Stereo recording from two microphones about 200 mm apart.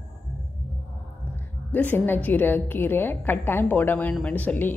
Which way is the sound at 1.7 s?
10° left (ahead or behind).